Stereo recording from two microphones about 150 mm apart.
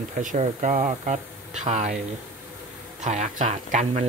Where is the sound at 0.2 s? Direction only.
55° right (ahead or behind).